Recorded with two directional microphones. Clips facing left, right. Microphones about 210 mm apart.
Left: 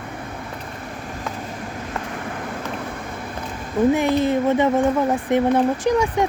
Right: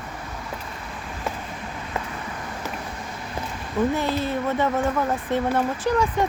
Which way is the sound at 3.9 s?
15° left (ahead or behind).